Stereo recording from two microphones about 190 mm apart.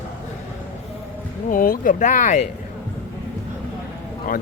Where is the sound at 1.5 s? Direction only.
45° left (ahead or behind).